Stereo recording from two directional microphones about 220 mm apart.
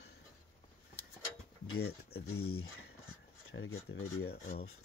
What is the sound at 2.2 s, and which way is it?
Speech, 75° left (ahead or behind).